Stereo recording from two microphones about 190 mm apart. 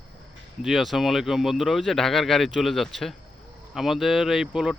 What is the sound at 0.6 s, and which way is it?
Speech, centre (ahead or behind).